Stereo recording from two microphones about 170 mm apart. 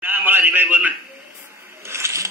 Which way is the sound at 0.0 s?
10° right (ahead or behind).